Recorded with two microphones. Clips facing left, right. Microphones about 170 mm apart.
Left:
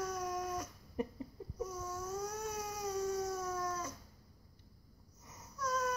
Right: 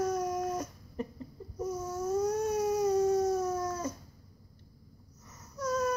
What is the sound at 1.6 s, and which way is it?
Baby cry, 40° right (ahead or behind).